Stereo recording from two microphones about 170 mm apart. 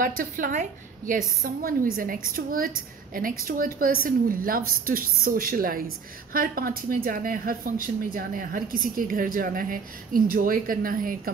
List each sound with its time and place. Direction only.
0.0 s a woman's voice: 55° right (ahead or behind)